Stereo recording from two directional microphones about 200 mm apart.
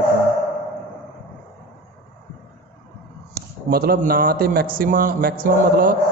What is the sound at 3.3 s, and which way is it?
A man's voice, 50° right (ahead or behind).